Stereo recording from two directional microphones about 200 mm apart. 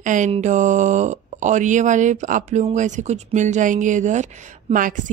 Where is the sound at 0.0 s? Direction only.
40° right (ahead or behind).